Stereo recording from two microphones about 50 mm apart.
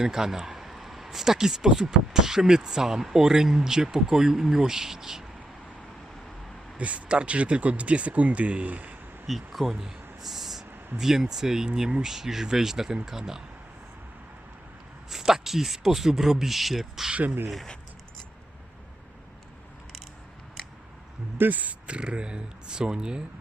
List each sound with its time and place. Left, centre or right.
0.0 s speech: centre
6.7 s speech: right
9.2 s speech: centre
15.1 s speech: centre
17.1 s speech: right
21.3 s speech: right; by 23.2 s centre